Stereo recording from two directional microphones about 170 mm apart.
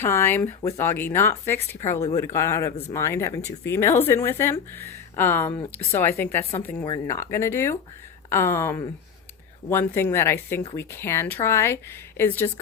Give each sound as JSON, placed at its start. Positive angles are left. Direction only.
{"t": 0.0, "sound": "speech", "side_deg": 15}